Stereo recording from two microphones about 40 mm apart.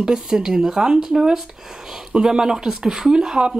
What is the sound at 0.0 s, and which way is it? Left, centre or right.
Speech, centre.